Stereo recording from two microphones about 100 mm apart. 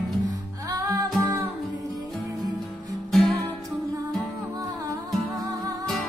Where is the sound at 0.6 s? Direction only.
35° right (ahead or behind).